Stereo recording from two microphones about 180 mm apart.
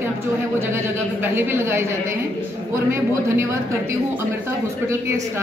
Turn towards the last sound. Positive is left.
turn(degrees=-15)  # may be behind; listen again after turning